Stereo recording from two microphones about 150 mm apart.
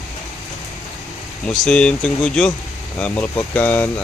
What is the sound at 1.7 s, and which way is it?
Speech, 5° left (ahead or behind).